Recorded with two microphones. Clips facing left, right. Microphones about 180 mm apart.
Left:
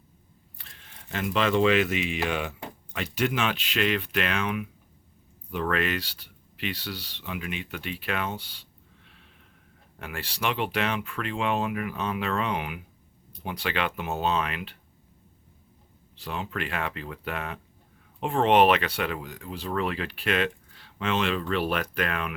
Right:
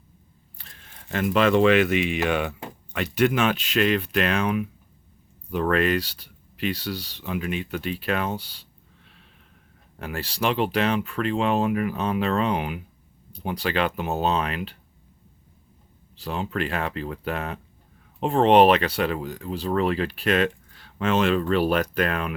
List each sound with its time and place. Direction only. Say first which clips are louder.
1.1 s speech: right 5 dB; 50° right (ahead or behind)
10.0 s speech: right 5 dB; 35° right (ahead or behind)
16.1 s speech: right 5 dB; 35° right (ahead or behind)